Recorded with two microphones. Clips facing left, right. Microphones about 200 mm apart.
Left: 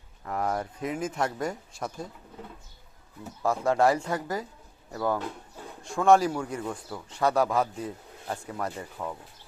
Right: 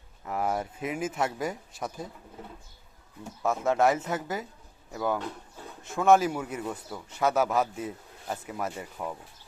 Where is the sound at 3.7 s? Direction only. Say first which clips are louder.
Left 1 dB; 20° right (ahead or behind).